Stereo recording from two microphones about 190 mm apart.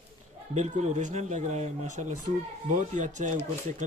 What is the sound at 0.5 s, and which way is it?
Speech, 40° right (ahead or behind).